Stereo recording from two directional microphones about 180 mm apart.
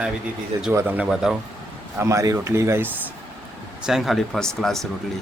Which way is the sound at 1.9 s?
15° right (ahead or behind).